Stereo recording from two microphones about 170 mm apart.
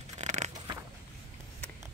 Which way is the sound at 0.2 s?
45° right (ahead or behind).